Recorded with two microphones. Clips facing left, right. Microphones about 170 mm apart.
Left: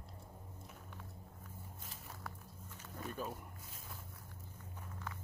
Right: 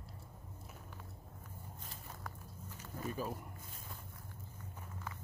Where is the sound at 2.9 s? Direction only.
Centre (ahead or behind).